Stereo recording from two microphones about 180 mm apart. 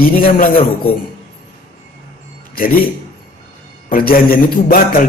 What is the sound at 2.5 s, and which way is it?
Speech, 55° left (ahead or behind).